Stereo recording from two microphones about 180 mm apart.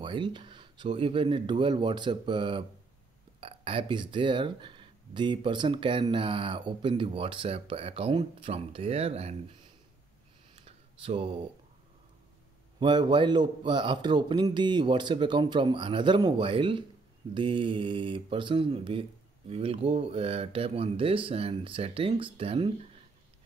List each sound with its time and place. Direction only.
0.0 s speech: 25° right (ahead or behind)
10.5 s a sound: 30° right (ahead or behind)
12.7 s speech: 25° right (ahead or behind)